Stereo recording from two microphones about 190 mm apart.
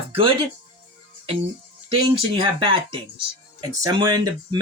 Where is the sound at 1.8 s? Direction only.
25° right (ahead or behind).